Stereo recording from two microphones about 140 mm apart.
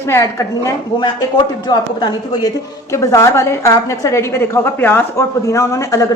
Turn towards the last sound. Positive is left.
turn(degrees=25)  # may be behind; listen again after turning